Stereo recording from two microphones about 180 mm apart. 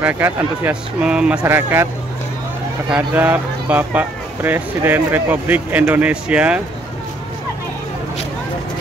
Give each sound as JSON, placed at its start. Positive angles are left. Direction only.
{"t": 0.0, "sound": "speech", "side_deg": -10}
{"t": 3.0, "sound": "speech", "side_deg": -10}